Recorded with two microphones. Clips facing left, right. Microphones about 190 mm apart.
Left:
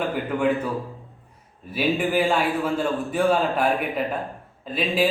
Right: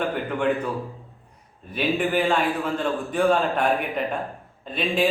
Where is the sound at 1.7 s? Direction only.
5° left (ahead or behind).